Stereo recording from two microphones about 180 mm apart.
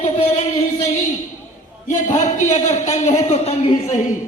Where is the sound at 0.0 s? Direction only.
40° left (ahead or behind).